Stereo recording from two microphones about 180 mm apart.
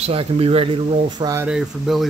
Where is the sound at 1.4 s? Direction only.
Centre (ahead or behind).